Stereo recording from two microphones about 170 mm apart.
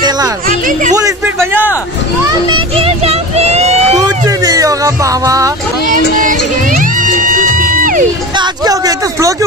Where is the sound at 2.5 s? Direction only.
30° right (ahead or behind).